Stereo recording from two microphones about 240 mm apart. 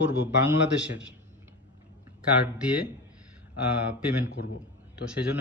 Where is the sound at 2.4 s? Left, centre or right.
Centre.